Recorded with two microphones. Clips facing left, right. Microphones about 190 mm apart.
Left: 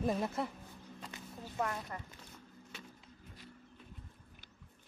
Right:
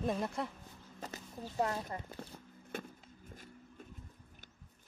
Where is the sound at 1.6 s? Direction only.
25° right (ahead or behind).